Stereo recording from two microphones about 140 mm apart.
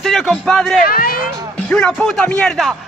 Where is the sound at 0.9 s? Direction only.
90° left.